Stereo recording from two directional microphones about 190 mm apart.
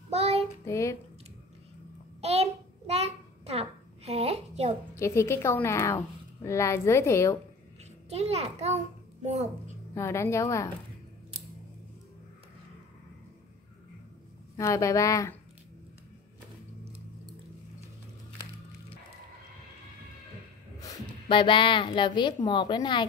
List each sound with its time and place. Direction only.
0.1 s child singing: 30° right (ahead or behind)
0.7 s a woman's voice: 15° left (ahead or behind)
2.2 s a sound: 30° right (ahead or behind)
4.9 s a woman's voice: 15° left (ahead or behind)
8.1 s a child's voice: 35° right (ahead or behind)
9.9 s a woman's voice: 15° left (ahead or behind)
14.6 s a woman's voice: 15° left (ahead or behind)
20.8 s speech: 20° left (ahead or behind)